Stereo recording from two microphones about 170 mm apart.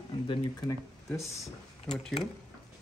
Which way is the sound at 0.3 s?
25° left (ahead or behind).